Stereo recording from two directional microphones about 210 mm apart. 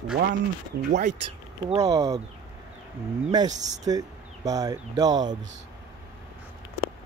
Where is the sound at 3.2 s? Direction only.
20° right (ahead or behind).